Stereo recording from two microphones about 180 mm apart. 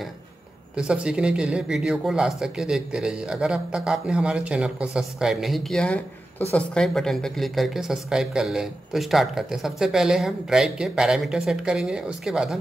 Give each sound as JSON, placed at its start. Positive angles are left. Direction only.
{"t": 0.7, "sound": "speech", "side_deg": -5}